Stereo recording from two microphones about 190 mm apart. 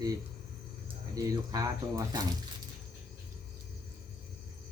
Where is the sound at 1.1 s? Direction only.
20° right (ahead or behind).